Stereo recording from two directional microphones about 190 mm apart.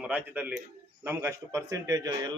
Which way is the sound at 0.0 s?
10° right (ahead or behind).